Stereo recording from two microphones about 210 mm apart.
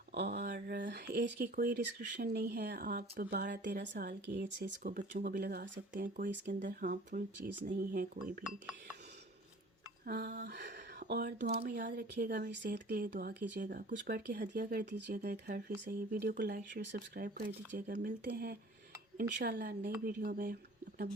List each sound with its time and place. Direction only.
0.1 s speech: 55° right (ahead or behind)
0.4 s speech: 40° right (ahead or behind)
0.8 s speech: 55° right (ahead or behind)
4.9 s speech: 40° right (ahead or behind)
5.2 s speech: 50° right (ahead or behind)
6.0 s speech: 40° right (ahead or behind)
7.5 s speech: 55° right (ahead or behind)
10.1 s a sound: 55° right (ahead or behind)
11.0 s speech: 50° right (ahead or behind)